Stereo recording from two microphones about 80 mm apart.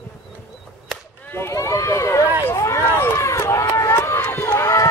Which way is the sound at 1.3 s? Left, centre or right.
Left.